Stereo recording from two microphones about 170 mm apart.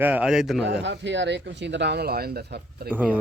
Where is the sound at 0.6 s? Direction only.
90° right; by 2.9 s 70° right (ahead or behind).